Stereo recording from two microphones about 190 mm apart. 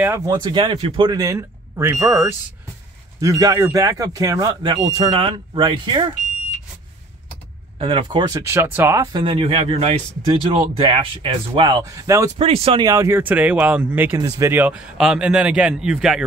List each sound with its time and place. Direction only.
0.0 s speech: 15° right (ahead or behind)
7.8 s speech: 25° right (ahead or behind)
12.4 s speech: 30° right (ahead or behind); by 16.3 s 5° right (ahead or behind)